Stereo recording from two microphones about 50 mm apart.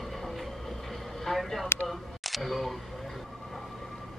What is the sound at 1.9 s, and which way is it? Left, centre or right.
A woman's voice, centre.